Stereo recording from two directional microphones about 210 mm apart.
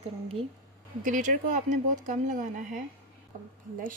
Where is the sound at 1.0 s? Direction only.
40° right (ahead or behind).